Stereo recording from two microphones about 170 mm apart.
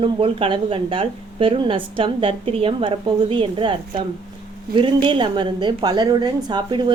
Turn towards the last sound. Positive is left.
turn(degrees=-25)  # may be behind; listen again after turning